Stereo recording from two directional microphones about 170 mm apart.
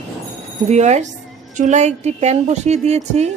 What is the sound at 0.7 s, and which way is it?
Speech, 40° right (ahead or behind).